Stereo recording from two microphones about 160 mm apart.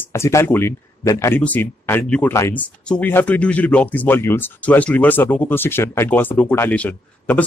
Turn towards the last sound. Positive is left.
turn(degrees=10)  # may be behind; listen again after turning